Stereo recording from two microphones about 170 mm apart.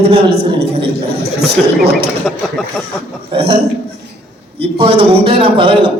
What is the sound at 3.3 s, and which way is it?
Speech, 35° right (ahead or behind).